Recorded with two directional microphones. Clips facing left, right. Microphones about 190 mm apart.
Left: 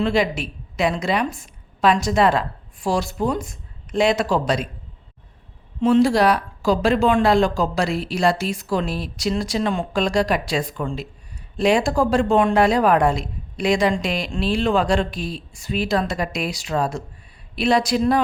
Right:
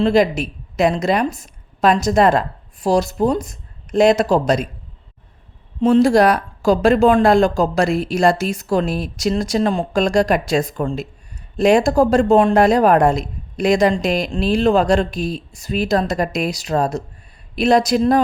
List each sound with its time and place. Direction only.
0.0 s a woman's voice: 40° right (ahead or behind)
5.8 s a woman's voice: 40° right (ahead or behind)